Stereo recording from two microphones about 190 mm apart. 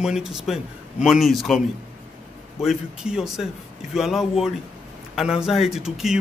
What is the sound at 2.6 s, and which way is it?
A man's voice, 5° right (ahead or behind).